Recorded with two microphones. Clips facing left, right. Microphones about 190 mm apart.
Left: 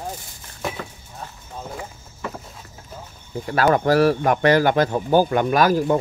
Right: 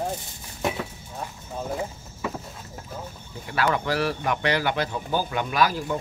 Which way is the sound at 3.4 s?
45° left (ahead or behind).